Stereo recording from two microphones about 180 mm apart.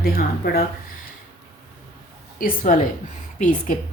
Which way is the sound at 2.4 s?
50° left (ahead or behind).